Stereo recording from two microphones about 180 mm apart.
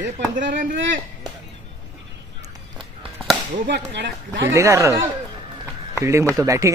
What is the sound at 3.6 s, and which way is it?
Speech, 70° right (ahead or behind).